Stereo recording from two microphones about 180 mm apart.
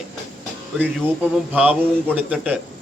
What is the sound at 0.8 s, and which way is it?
Speech, 10° right (ahead or behind).